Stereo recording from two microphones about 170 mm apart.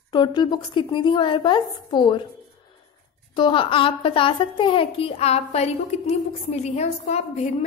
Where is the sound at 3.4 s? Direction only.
30° left (ahead or behind).